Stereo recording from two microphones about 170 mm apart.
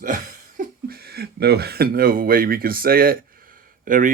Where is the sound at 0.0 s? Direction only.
50° right (ahead or behind).